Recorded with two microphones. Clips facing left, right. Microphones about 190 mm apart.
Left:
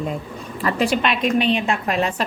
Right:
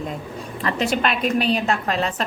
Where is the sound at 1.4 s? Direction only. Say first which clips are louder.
Left 1 dB; 40° right (ahead or behind).